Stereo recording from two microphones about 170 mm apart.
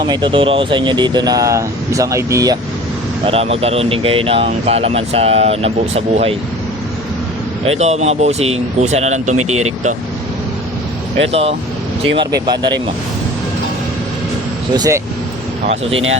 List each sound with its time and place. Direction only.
0.0 s speech: 25° right (ahead or behind)
3.2 s speech: 35° right (ahead or behind)
7.6 s speech: 40° right (ahead or behind)
11.2 s speech: 35° right (ahead or behind)
14.7 s speech: 20° right (ahead or behind)